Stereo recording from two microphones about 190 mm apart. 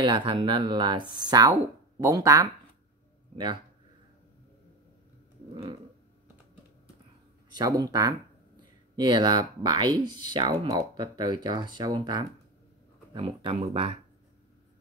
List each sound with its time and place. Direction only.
0.0 s speech: 25° right (ahead or behind)
7.5 s speech: 20° right (ahead or behind)